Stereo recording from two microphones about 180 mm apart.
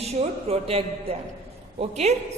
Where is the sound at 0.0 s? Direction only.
35° right (ahead or behind).